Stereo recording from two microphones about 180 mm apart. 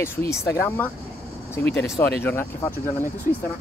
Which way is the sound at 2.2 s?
10° left (ahead or behind).